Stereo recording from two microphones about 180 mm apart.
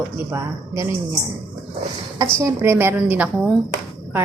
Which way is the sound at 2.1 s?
15° right (ahead or behind).